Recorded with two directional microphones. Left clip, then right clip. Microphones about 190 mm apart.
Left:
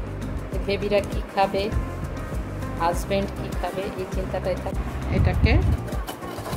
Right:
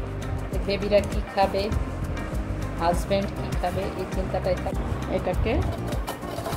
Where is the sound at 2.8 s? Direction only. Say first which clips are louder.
Even; 25° left (ahead or behind).